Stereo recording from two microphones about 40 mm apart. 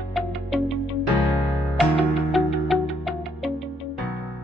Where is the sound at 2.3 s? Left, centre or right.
Centre.